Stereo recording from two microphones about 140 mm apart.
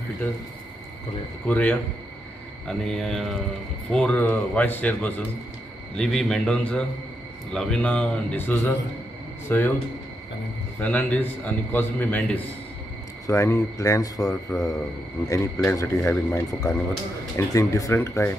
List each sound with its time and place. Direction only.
1.5 s a man's voice: 10° left (ahead or behind)
10.8 s a man's voice: 10° left (ahead or behind)
13.3 s a man's voice: 20° left (ahead or behind)